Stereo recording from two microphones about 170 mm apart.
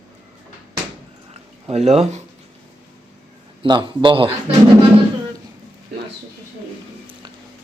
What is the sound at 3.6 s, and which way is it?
Speech, 30° right (ahead or behind).